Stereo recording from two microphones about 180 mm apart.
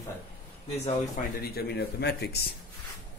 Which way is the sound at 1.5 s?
65° left (ahead or behind).